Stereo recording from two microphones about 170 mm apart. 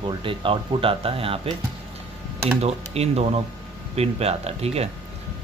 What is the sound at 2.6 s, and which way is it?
Speech, 40° right (ahead or behind).